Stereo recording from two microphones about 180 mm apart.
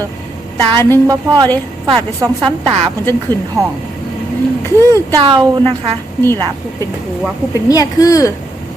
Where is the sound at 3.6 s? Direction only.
Centre (ahead or behind).